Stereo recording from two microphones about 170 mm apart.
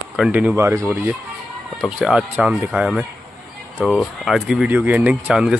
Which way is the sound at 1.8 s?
5° right (ahead or behind).